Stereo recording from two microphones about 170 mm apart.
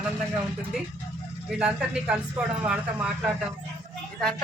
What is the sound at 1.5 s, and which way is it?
Speech, 5° right (ahead or behind).